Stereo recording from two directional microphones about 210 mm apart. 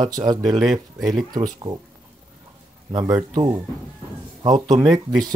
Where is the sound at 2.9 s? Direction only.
20° right (ahead or behind).